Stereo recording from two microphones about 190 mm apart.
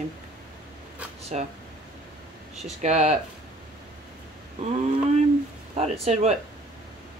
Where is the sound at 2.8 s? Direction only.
35° right (ahead or behind).